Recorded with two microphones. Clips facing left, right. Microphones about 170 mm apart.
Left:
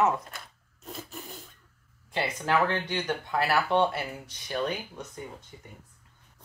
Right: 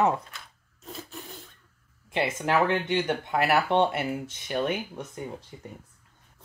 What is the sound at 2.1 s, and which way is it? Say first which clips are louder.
Speech: right 2 dB; 25° right (ahead or behind).